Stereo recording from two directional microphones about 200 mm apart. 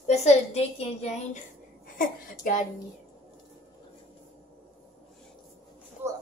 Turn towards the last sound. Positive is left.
turn(degrees=-10)  # may be behind; listen again after turning